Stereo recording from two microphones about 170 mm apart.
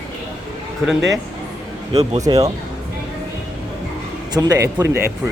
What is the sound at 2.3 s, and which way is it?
Speech, 30° right (ahead or behind).